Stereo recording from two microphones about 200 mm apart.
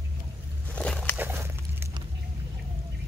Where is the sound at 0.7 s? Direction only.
5° left (ahead or behind).